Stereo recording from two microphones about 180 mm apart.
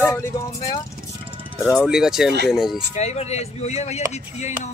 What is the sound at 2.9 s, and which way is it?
Speech, 35° left (ahead or behind).